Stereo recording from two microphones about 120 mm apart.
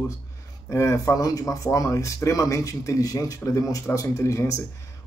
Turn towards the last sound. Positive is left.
turn(degrees=25)  # may be behind; listen again after turning